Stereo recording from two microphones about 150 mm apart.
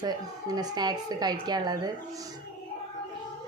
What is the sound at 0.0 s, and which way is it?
A woman's voice, 25° right (ahead or behind).